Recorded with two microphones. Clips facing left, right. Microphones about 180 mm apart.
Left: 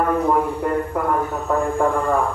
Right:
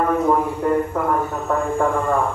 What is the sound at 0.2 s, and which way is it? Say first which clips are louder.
A man's voice: right 1 dB; centre (ahead or behind).